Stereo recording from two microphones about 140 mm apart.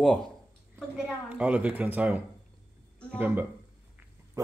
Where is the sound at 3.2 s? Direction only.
15° right (ahead or behind).